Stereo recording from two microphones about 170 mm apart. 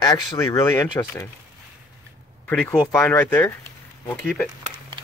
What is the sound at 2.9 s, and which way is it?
Speech, 10° left (ahead or behind).